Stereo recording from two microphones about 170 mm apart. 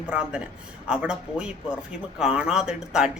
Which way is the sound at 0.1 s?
5° right (ahead or behind).